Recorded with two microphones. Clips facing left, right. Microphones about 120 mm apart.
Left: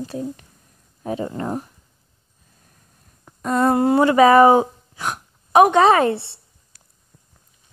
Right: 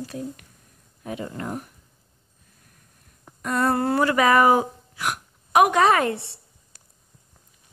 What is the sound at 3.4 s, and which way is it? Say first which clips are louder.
Speech: left 5 dB; 25° left (ahead or behind).